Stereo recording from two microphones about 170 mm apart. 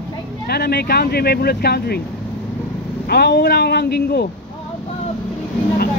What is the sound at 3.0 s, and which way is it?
Speech, 70° left (ahead or behind).